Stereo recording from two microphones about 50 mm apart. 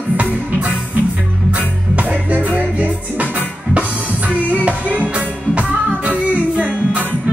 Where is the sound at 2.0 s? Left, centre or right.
Right.